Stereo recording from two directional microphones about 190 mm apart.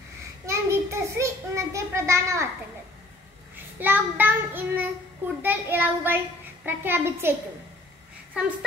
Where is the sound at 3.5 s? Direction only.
10° right (ahead or behind).